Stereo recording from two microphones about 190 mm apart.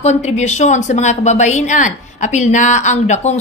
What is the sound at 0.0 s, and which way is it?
A woman's voice, 35° left (ahead or behind).